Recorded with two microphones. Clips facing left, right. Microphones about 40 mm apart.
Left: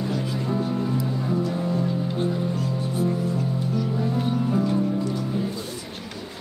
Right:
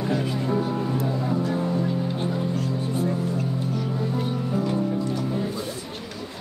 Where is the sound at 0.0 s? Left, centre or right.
Right.